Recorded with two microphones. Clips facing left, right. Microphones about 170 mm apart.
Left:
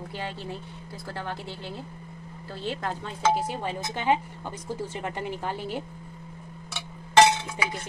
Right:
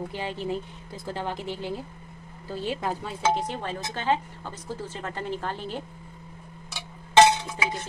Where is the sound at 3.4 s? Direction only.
10° left (ahead or behind).